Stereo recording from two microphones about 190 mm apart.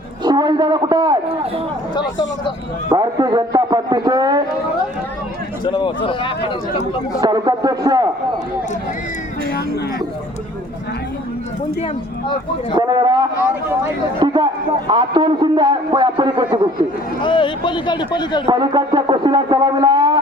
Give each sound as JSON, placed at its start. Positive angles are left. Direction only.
{"t": 0.3, "sound": "a man's voice", "side_deg": -20}
{"t": 2.0, "sound": "a man's voice", "side_deg": 25}
{"t": 2.9, "sound": "a man's voice", "side_deg": -20}
{"t": 5.6, "sound": "a man's voice", "side_deg": 25}
{"t": 7.2, "sound": "a man's voice", "side_deg": -20}
{"t": 12.7, "sound": "a man's voice", "side_deg": -20}
{"t": 17.2, "sound": "a man's voice", "side_deg": 25}
{"t": 18.4, "sound": "a man's voice", "side_deg": -25}